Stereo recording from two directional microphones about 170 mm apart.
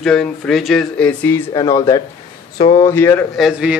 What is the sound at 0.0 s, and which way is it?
Speech, 5° left (ahead or behind).